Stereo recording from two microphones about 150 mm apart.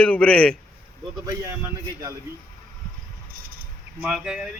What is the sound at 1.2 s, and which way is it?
Speech, 20° right (ahead or behind).